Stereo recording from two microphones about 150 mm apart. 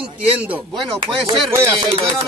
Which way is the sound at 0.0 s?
10° right (ahead or behind).